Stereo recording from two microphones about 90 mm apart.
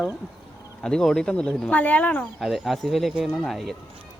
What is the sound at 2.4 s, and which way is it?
Speech, centre (ahead or behind).